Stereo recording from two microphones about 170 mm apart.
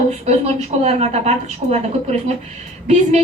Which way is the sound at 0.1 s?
40° right (ahead or behind).